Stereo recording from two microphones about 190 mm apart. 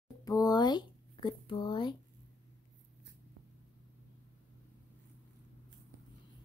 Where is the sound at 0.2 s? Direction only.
20° left (ahead or behind).